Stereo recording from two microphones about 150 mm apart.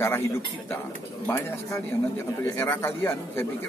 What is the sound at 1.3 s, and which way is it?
Speech, 15° left (ahead or behind).